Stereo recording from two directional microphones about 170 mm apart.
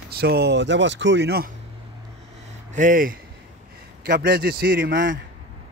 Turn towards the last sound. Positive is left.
turn(degrees=-55)  # may be behind; listen again after turning